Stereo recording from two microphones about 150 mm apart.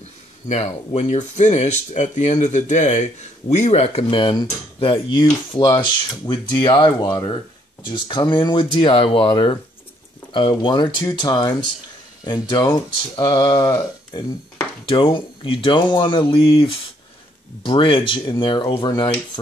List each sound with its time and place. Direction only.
0.5 s speech: 50° left (ahead or behind); by 19.0 s 30° left (ahead or behind)